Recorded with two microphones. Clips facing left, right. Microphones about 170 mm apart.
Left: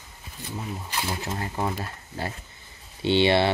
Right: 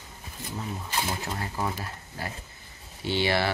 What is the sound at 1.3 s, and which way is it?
Speech, 30° left (ahead or behind).